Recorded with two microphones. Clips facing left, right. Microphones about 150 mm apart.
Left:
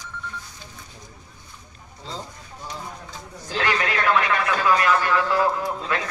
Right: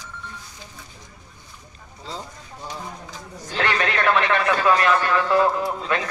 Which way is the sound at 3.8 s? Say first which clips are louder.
Right 2 dB; 25° right (ahead or behind).